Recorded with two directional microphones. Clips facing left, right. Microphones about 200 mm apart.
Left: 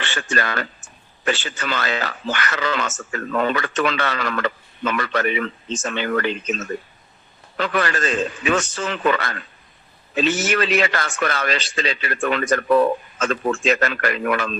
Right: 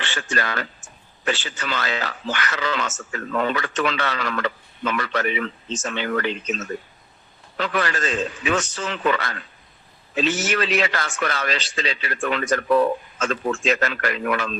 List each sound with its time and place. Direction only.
0.0 s speech: 55° left (ahead or behind)
7.6 s speech: 55° left (ahead or behind)